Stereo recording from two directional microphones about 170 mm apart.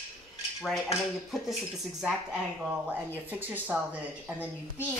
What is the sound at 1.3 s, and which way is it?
Speech, centre (ahead or behind).